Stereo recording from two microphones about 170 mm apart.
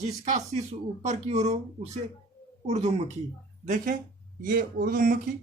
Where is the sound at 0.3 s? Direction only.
40° right (ahead or behind).